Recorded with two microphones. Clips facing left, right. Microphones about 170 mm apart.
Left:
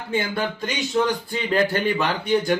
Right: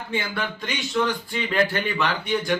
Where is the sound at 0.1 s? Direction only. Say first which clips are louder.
Left 4 dB; 35° left (ahead or behind).